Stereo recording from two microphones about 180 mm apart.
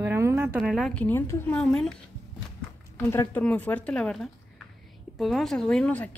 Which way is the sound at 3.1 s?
10° left (ahead or behind).